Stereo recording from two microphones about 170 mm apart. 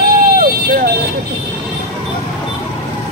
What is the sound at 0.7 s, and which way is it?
Vehicle, 65° right (ahead or behind).